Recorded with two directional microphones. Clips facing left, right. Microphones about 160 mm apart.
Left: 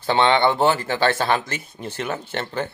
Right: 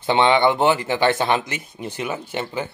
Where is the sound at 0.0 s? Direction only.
15° right (ahead or behind).